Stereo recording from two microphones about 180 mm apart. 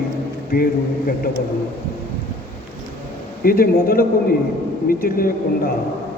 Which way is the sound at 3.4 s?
55° left (ahead or behind).